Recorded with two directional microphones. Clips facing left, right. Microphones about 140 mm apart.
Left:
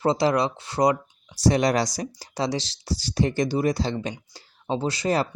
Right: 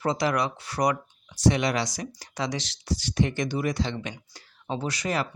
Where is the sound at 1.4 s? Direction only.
35° left (ahead or behind).